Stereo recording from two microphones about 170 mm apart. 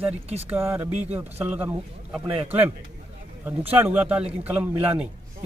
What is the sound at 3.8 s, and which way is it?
Speech, 10° right (ahead or behind).